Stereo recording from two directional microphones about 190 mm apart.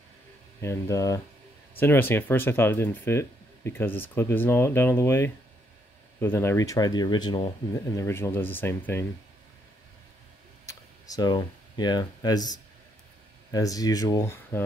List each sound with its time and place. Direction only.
0.6 s speech: 15° left (ahead or behind)
8.0 s speech: 15° left (ahead or behind)
10.7 s speech: 20° left (ahead or behind)